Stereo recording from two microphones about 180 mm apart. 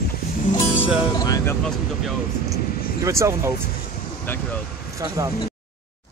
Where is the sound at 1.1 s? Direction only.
20° left (ahead or behind).